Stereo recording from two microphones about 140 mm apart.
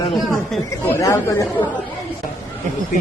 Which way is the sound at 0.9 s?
20° left (ahead or behind).